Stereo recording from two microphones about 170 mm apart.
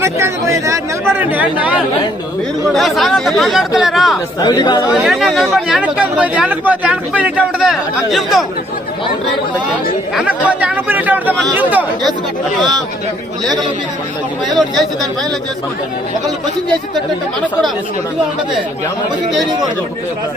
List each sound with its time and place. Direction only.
0.0 s speech: 15° right (ahead or behind)
4.4 s speech: 25° left (ahead or behind)
4.9 s speech: centre (ahead or behind)
10.2 s speech: 10° right (ahead or behind)